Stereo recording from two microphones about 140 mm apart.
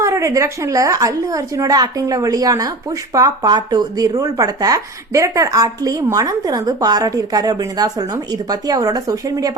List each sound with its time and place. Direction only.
0.0 s a woman's voice: 20° right (ahead or behind)